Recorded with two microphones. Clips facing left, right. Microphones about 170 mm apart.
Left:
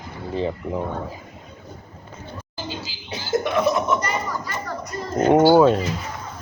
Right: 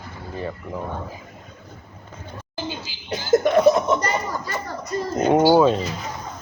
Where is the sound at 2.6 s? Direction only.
55° right (ahead or behind).